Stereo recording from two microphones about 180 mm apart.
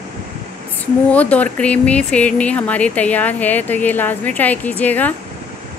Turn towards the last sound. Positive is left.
turn(degrees=10)  # may be behind; listen again after turning